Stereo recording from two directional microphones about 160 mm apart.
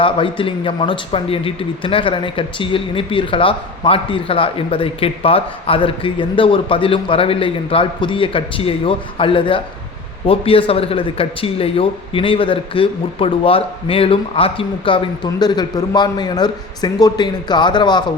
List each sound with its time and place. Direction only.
0.0 s a man's voice: 35° left (ahead or behind)